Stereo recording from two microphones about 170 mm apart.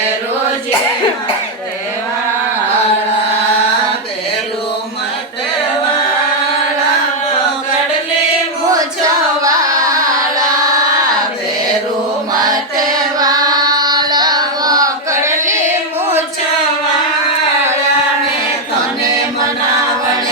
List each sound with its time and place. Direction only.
12.3 s chant: 20° right (ahead or behind)